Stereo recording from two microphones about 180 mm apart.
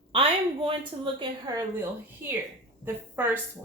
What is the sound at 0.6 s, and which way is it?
Speech, 30° right (ahead or behind).